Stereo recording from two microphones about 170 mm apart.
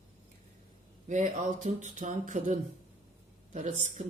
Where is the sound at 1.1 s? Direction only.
45° right (ahead or behind).